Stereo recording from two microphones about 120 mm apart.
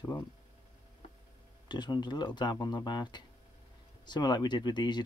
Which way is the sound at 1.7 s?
35° left (ahead or behind).